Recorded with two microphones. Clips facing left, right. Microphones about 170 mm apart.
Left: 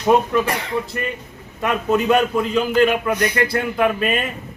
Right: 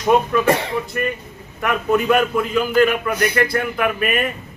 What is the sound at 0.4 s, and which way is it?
Speech, 25° right (ahead or behind).